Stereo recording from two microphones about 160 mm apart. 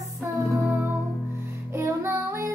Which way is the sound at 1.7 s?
15° right (ahead or behind).